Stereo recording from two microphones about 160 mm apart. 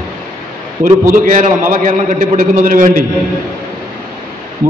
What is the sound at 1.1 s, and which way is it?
A man's voice, 55° right (ahead or behind).